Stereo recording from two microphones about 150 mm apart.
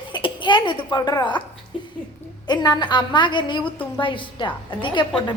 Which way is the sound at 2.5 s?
30° left (ahead or behind).